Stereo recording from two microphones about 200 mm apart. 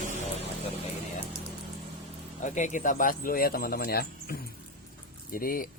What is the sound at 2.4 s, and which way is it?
Speech, 40° left (ahead or behind).